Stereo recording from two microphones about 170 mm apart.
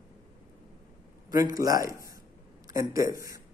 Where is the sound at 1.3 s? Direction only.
20° right (ahead or behind).